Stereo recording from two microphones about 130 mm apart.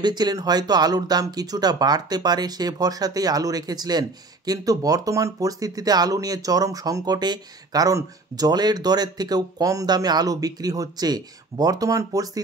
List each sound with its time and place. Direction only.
0.0 s speech: 35° right (ahead or behind)